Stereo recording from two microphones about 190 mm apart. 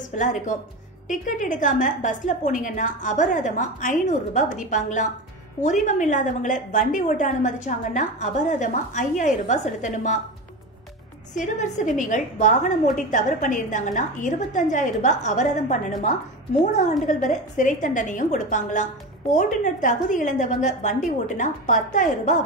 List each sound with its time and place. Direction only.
0.0 s a woman's voice: 40° left (ahead or behind)
11.3 s a woman's voice: 40° left (ahead or behind)
17.0 s a woman's voice: 40° left (ahead or behind)